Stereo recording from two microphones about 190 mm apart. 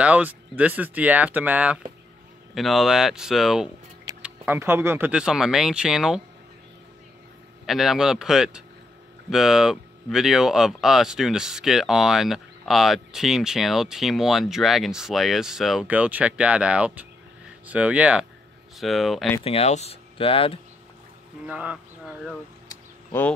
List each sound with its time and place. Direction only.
0.0 s speech: 10° right (ahead or behind)
7.6 s speech: centre (ahead or behind)
19.4 s speech: 35° left (ahead or behind)
21.5 s speech: 5° right (ahead or behind)
22.7 s a sound: 10° left (ahead or behind)